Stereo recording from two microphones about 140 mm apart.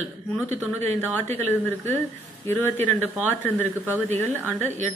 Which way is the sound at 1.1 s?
15° left (ahead or behind).